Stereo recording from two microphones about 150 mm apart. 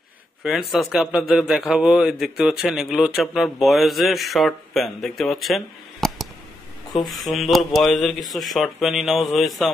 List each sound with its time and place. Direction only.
0.4 s a man's voice: centre (ahead or behind)